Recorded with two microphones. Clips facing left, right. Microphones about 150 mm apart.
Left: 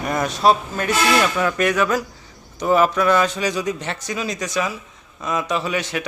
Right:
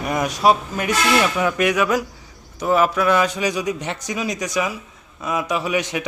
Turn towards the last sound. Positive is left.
turn(degrees=-15)  # may be behind; listen again after turning